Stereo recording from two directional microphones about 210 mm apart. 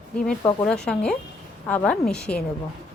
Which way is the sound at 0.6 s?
5° left (ahead or behind).